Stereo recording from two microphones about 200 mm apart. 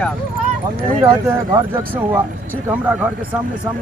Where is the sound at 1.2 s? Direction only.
10° right (ahead or behind).